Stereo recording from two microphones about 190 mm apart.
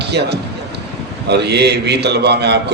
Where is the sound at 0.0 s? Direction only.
60° right (ahead or behind).